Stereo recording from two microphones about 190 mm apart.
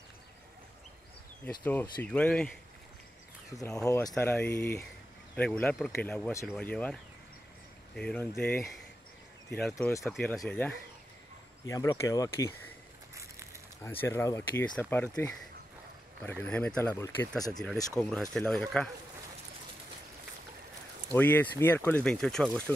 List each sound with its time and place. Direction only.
1.6 s speech: 10° left (ahead or behind)
3.6 s speech: 15° left (ahead or behind)
9.8 s speech: 15° left (ahead or behind)
10.0 s speech: centre (ahead or behind)
11.6 s speech: 15° left (ahead or behind)
13.1 s crushing: 15° right (ahead or behind)
13.8 s speech: 15° left (ahead or behind)
18.1 s speech: 5° left (ahead or behind)
21.1 s speech: 10° left (ahead or behind)